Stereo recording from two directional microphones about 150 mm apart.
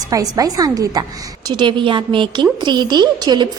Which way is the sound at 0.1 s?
25° right (ahead or behind).